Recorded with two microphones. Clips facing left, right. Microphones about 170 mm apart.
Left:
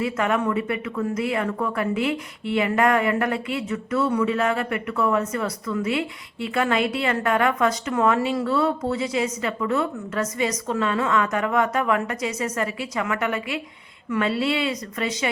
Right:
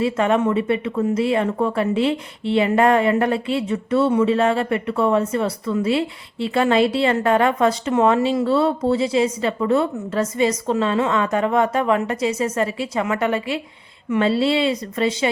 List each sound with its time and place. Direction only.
0.0 s speech: 30° right (ahead or behind)